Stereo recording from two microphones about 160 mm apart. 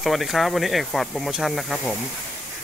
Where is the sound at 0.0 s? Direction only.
Centre (ahead or behind).